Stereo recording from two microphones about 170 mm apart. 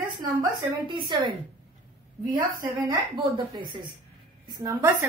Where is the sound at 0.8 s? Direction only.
30° right (ahead or behind).